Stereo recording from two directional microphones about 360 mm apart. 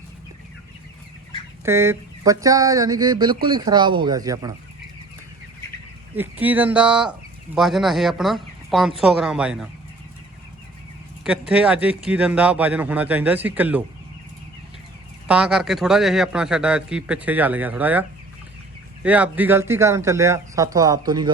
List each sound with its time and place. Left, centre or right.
1.6 s speech: centre
6.1 s speech: centre
11.2 s speech: centre
15.3 s speech: centre
19.0 s speech: centre